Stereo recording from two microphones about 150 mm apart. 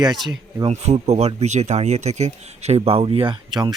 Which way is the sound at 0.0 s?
25° right (ahead or behind).